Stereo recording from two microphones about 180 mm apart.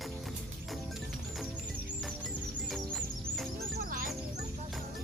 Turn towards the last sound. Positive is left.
turn(degrees=0)  # may be behind; listen again after turning